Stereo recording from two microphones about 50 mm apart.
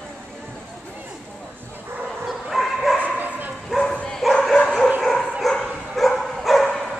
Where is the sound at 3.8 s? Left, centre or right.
Left.